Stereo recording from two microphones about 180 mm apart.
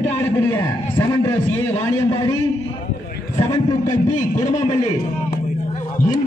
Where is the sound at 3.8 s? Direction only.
45° left (ahead or behind).